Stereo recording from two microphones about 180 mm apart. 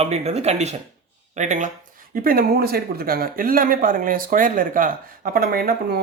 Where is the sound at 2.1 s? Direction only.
55° right (ahead or behind).